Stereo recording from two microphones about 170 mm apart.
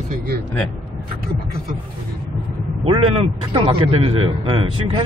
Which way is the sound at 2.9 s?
30° right (ahead or behind).